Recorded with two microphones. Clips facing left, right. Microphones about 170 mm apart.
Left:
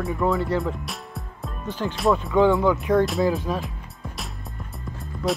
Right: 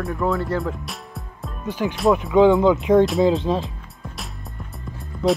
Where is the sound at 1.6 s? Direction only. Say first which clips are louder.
Right 3 dB; 10° right (ahead or behind).